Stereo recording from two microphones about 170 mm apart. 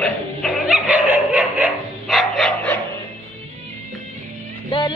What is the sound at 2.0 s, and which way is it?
Dog, centre (ahead or behind).